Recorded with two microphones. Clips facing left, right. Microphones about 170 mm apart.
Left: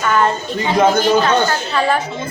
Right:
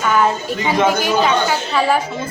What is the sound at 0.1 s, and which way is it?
A woman's voice, 5° right (ahead or behind).